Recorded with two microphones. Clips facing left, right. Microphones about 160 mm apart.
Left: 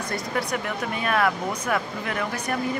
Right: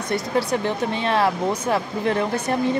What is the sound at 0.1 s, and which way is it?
Speech, 30° right (ahead or behind).